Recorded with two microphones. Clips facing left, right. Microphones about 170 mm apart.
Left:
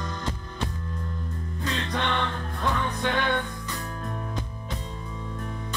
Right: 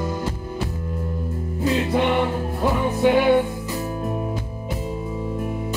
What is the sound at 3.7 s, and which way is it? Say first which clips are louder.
Music: right 8 dB; 20° right (ahead or behind).